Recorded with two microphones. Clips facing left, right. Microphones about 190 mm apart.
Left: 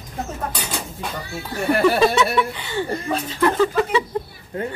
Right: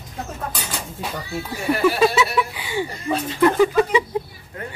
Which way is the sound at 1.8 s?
5° right (ahead or behind).